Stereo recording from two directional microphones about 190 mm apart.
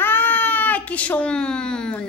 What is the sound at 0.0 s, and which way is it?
Speech, 10° left (ahead or behind).